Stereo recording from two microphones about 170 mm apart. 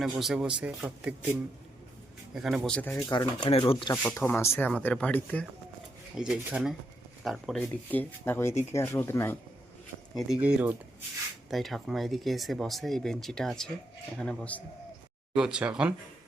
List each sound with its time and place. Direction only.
0.0 s speech: centre (ahead or behind)
3.0 s speech: 25° left (ahead or behind)
3.9 s speech: 15° left (ahead or behind)
6.1 s speech: 5° right (ahead or behind); by 9.4 s 15° left (ahead or behind)
10.2 s speech: 5° right (ahead or behind)
15.4 s speech: 5° right (ahead or behind)